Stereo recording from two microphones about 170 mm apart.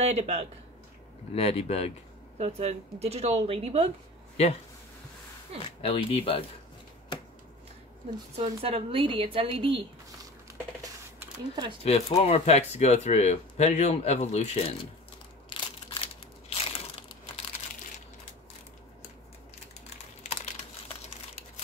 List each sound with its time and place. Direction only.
0.0 s speech: 40° right (ahead or behind)
1.3 s speech: 35° left (ahead or behind)
2.3 s speech: 35° right (ahead or behind)
5.8 s speech: 35° left (ahead or behind)
8.4 s speech: 35° right (ahead or behind)
10.8 s a sound: 20° right (ahead or behind)
11.8 s speech: 35° left (ahead or behind)
15.5 s crushing: 30° left (ahead or behind)